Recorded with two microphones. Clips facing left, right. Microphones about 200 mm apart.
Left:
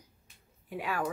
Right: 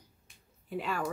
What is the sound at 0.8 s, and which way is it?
Speech, 10° left (ahead or behind).